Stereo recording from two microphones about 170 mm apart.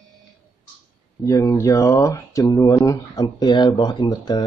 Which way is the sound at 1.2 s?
20° left (ahead or behind).